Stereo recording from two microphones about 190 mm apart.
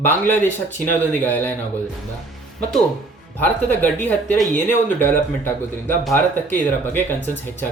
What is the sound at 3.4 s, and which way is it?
Speech, 10° left (ahead or behind).